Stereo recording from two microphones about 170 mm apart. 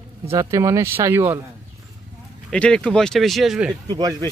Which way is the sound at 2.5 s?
5° left (ahead or behind).